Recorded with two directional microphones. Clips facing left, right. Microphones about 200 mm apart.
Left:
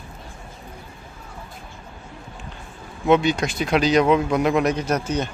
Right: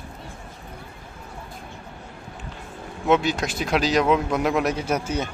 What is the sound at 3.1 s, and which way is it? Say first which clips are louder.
A man's voice: left 3 dB; centre (ahead or behind).